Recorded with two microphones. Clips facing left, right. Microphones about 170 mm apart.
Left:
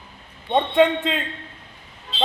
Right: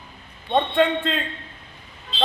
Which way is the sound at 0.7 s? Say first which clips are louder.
Left 6 dB; 15° left (ahead or behind).